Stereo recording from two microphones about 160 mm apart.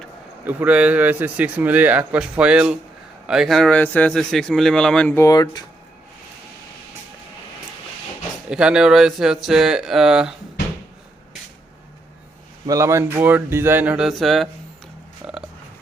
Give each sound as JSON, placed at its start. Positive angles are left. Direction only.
{"t": 0.4, "sound": "a man's voice", "side_deg": -10}
{"t": 5.1, "sound": "speech", "side_deg": 20}
{"t": 8.4, "sound": "a man's voice", "side_deg": -5}
{"t": 12.6, "sound": "speech", "side_deg": -20}
{"t": 15.2, "sound": "a sound", "side_deg": -5}